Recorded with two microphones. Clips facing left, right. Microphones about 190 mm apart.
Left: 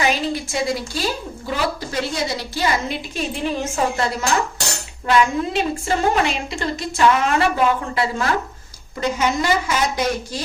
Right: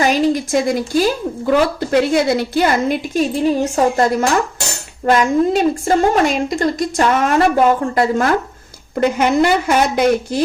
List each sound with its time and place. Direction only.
0.0 s a woman's voice: 45° right (ahead or behind)
9.0 s speech: 60° right (ahead or behind)